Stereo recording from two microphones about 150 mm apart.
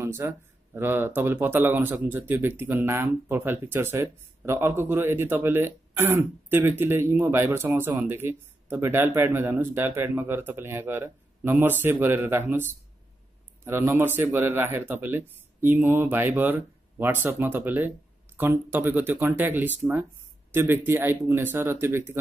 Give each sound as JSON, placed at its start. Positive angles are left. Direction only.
{"t": 0.0, "sound": "speech", "side_deg": -20}
{"t": 13.7, "sound": "speech", "side_deg": -15}